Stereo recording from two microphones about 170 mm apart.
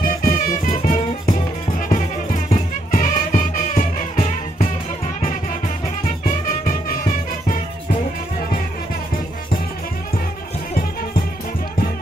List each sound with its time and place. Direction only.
0.2 s music: 55° left (ahead or behind)
6.0 s music: 55° left (ahead or behind)
10.7 s music: 60° left (ahead or behind)